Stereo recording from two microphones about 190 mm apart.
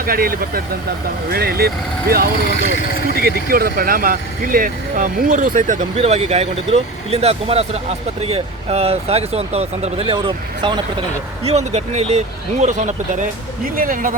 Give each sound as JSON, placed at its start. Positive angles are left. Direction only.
{"t": 0.0, "sound": "speech", "side_deg": -50}